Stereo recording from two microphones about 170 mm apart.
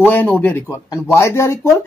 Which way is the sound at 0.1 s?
10° left (ahead or behind).